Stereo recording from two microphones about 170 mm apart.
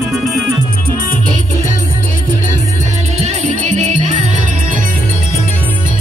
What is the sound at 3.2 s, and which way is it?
Music, 40° right (ahead or behind).